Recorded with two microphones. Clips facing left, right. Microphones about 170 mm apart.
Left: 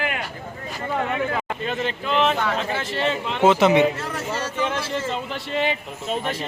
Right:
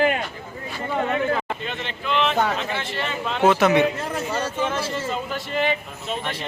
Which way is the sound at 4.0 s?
15° right (ahead or behind).